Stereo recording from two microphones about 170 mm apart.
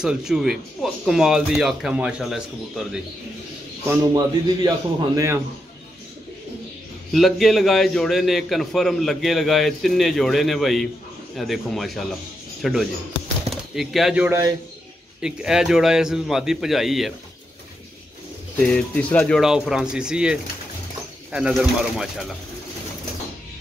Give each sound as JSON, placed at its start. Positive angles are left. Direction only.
{"t": 0.0, "sound": "a man's voice", "side_deg": -5}
{"t": 3.9, "sound": "a man's voice", "side_deg": -20}
{"t": 7.1, "sound": "a man's voice", "side_deg": 0}
{"t": 18.6, "sound": "a man's voice", "side_deg": 5}